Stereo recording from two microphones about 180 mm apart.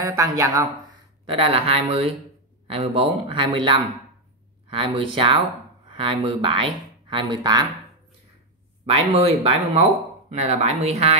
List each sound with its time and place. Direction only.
0.0 s speech: 20° right (ahead or behind)
1.2 s speech: 30° right (ahead or behind)
8.8 s speech: 35° right (ahead or behind)